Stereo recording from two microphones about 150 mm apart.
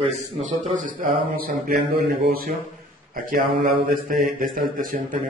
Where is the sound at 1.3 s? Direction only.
80° right.